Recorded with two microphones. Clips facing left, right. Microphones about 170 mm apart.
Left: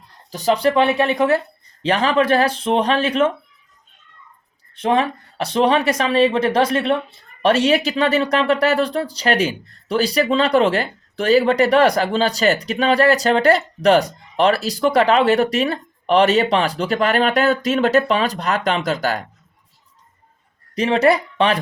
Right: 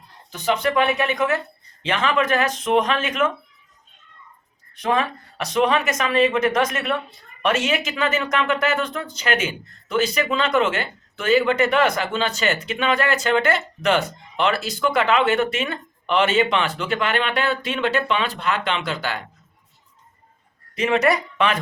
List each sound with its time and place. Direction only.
0.3 s speech: 35° left (ahead or behind)
4.7 s speech: 25° left (ahead or behind)
20.7 s speech: 35° left (ahead or behind)